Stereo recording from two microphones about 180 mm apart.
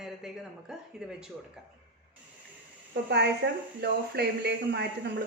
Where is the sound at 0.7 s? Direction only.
5° right (ahead or behind).